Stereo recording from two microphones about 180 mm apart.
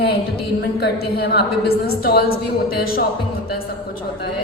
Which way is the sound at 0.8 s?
65° left (ahead or behind).